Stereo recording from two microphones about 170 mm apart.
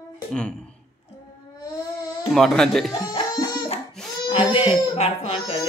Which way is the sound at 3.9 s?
5° left (ahead or behind).